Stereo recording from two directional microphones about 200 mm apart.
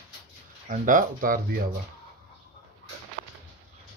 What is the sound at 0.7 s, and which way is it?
Speech, 40° right (ahead or behind).